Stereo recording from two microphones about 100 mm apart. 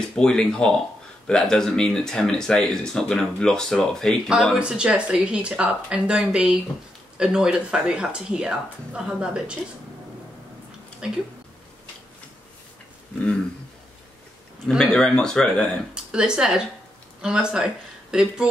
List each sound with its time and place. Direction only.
0.1 s speech: 5° left (ahead or behind); by 9.6 s 10° right (ahead or behind)
11.0 s speech: 5° right (ahead or behind)
14.7 s speech: 5° left (ahead or behind)
15.9 s speech: 10° right (ahead or behind)